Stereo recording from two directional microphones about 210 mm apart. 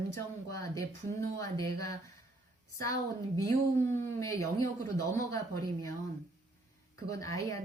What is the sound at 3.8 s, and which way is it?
Speech, 15° left (ahead or behind).